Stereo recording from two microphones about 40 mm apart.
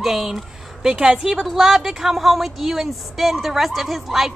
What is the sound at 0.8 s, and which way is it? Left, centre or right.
A woman's voice, centre.